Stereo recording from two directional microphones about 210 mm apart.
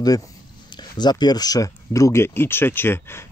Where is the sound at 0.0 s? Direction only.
15° left (ahead or behind).